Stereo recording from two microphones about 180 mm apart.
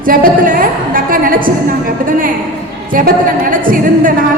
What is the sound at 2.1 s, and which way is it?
A woman's voice, 50° right (ahead or behind).